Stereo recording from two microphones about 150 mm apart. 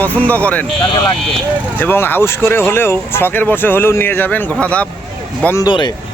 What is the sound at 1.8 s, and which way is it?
Speech, 15° left (ahead or behind).